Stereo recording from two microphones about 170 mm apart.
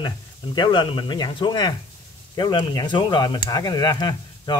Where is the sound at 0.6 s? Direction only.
25° left (ahead or behind).